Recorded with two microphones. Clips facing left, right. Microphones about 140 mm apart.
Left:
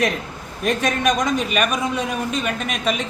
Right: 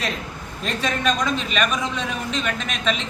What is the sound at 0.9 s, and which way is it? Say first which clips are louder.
Speech: even; 15° left (ahead or behind).